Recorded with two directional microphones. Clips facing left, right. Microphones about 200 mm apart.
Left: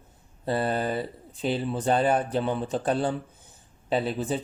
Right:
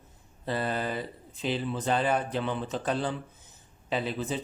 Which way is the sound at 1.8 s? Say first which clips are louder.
Left 4 dB; 45° left (ahead or behind).